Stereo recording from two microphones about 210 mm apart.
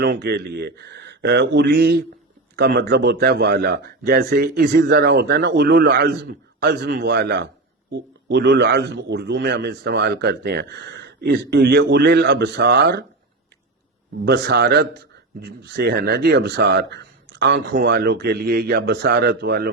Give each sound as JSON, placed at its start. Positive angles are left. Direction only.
{"t": 0.0, "sound": "speech", "side_deg": -50}
{"t": 14.3, "sound": "speech", "side_deg": -50}